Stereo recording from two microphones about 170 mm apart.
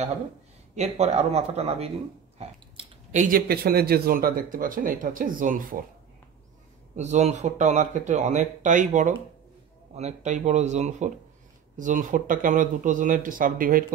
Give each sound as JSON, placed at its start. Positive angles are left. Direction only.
{"t": 0.7, "sound": "speech", "side_deg": -40}
{"t": 7.0, "sound": "speech", "side_deg": -40}